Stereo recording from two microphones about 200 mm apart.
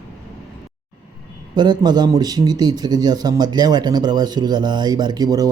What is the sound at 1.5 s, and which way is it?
A man's voice, 20° right (ahead or behind).